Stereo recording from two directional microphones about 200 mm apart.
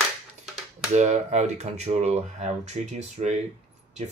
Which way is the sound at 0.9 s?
35° right (ahead or behind).